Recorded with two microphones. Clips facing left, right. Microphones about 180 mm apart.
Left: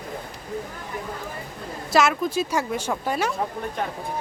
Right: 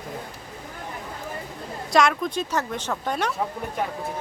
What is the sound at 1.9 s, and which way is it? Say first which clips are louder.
Speech: left 1 dB; 5° left (ahead or behind).